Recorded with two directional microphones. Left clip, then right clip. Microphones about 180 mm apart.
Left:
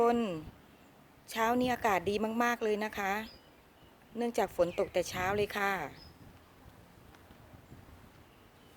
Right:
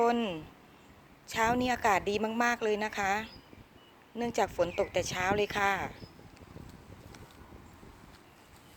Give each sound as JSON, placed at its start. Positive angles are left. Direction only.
{"t": 0.0, "sound": "a woman's voice", "side_deg": 25}